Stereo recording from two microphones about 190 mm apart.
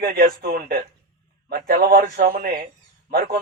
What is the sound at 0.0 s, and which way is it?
A man's voice, 50° right (ahead or behind).